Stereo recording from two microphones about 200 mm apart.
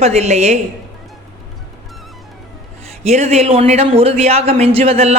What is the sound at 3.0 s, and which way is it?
Speech, 35° right (ahead or behind).